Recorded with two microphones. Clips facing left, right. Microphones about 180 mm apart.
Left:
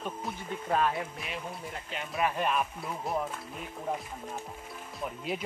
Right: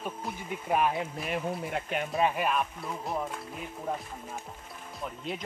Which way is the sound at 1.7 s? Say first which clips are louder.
Right 7 dB; 55° right (ahead or behind).